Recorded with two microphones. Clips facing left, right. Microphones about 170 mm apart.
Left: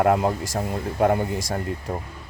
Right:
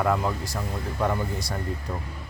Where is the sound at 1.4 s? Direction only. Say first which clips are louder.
Left 4 dB; 45° left (ahead or behind).